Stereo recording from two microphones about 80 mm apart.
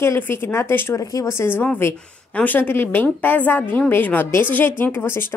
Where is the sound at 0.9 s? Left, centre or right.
Left.